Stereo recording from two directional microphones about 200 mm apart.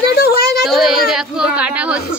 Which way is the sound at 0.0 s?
55° left (ahead or behind).